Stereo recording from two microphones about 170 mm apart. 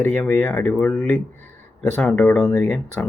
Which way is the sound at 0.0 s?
10° left (ahead or behind).